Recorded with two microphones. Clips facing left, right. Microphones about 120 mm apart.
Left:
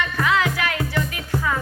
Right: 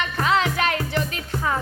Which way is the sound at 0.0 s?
25° right (ahead or behind).